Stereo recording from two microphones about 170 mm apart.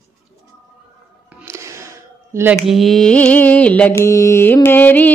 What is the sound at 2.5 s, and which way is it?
Speech, centre (ahead or behind).